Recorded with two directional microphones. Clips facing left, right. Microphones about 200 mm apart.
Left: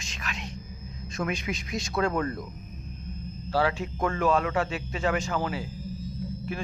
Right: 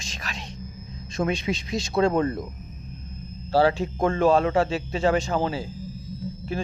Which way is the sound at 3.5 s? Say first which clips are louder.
Right 6 dB; 30° right (ahead or behind).